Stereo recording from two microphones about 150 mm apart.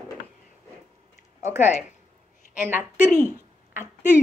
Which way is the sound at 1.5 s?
15° right (ahead or behind).